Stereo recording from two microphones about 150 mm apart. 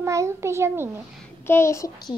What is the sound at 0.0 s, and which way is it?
Speech, 20° right (ahead or behind).